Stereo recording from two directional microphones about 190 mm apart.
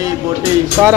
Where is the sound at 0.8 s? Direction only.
5° right (ahead or behind).